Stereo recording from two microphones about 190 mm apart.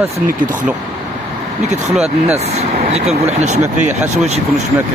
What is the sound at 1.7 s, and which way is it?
Speech, 35° right (ahead or behind).